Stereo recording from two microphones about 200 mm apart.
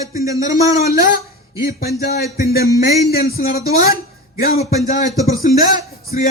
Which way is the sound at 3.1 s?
50° left (ahead or behind).